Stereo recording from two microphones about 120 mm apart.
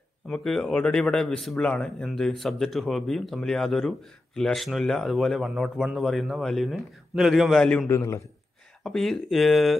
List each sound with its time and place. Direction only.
0.3 s speech: 5° left (ahead or behind)
7.6 s a man's voice: 10° left (ahead or behind)
7.9 s a man's voice: 25° left (ahead or behind)
8.8 s speech: centre (ahead or behind)